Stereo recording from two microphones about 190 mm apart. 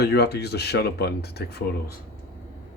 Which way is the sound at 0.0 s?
60° left (ahead or behind).